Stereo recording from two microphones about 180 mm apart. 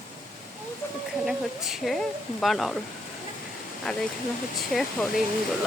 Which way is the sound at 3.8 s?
5° left (ahead or behind).